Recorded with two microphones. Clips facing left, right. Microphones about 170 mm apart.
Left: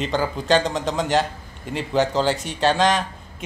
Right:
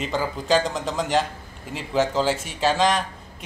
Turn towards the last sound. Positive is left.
turn(degrees=0)  # may be behind; listen again after turning